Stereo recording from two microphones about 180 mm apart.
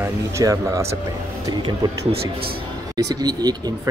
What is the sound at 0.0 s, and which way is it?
Speech, 15° right (ahead or behind).